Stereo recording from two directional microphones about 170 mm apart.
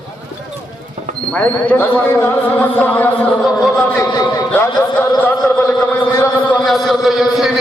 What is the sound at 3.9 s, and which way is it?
Speech, 20° left (ahead or behind).